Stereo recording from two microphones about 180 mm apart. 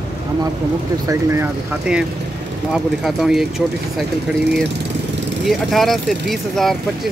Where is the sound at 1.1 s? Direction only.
15° right (ahead or behind).